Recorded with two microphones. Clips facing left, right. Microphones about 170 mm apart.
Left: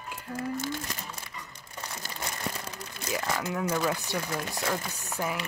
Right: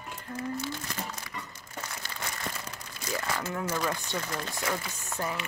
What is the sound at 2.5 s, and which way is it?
Crumpling, 10° left (ahead or behind).